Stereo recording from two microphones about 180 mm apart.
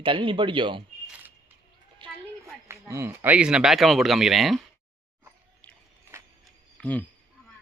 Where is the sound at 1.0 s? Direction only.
10° right (ahead or behind).